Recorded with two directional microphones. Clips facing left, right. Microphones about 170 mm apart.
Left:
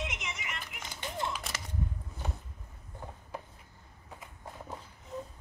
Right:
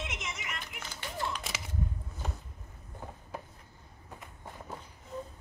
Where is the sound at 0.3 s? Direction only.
15° left (ahead or behind).